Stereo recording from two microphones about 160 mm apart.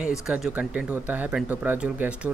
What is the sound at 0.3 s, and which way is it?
Speech, 5° right (ahead or behind).